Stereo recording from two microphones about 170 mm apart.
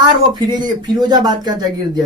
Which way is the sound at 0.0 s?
25° right (ahead or behind).